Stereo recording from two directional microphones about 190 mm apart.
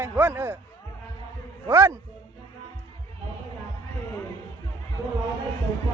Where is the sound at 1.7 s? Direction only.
15° right (ahead or behind).